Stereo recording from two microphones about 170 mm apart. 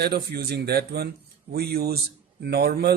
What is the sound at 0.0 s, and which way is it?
Speech, 75° right (ahead or behind).